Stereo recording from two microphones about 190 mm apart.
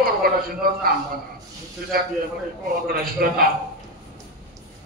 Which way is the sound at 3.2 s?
55° right (ahead or behind).